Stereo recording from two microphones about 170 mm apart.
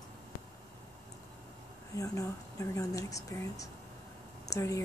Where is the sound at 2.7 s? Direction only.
20° left (ahead or behind).